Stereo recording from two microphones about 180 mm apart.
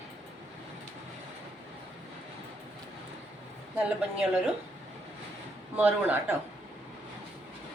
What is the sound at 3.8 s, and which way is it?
Speech, 5° right (ahead or behind).